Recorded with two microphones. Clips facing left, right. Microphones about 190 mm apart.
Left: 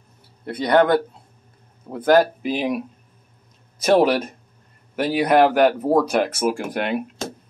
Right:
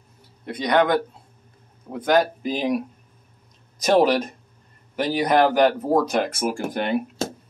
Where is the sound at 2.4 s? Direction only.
5° left (ahead or behind).